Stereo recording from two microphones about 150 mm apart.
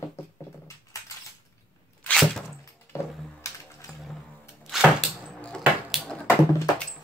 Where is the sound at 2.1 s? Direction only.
Centre (ahead or behind).